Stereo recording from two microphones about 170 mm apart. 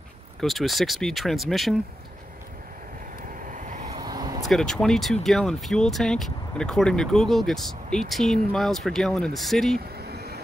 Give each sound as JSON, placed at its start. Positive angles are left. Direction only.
{"t": 0.4, "sound": "speech", "side_deg": 0}
{"t": 3.3, "sound": "vehicle", "side_deg": -50}
{"t": 3.9, "sound": "vehicle", "side_deg": -25}
{"t": 4.4, "sound": "speech", "side_deg": 0}
{"t": 9.8, "sound": "vehicle", "side_deg": -70}